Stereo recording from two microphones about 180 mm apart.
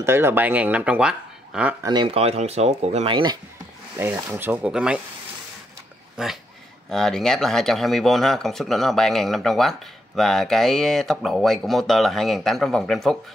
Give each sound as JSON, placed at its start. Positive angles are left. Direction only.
{"t": 0.0, "sound": "speech", "side_deg": -15}
{"t": 1.8, "sound": "speech", "side_deg": -25}
{"t": 4.0, "sound": "speech", "side_deg": -10}
{"t": 6.2, "sound": "speech", "side_deg": -5}